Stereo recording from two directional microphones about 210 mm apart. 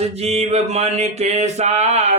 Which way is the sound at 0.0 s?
30° right (ahead or behind).